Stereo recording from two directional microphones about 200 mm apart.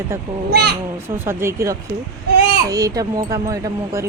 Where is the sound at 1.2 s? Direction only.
15° right (ahead or behind).